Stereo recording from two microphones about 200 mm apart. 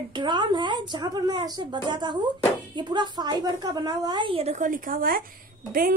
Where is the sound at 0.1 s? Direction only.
20° right (ahead or behind).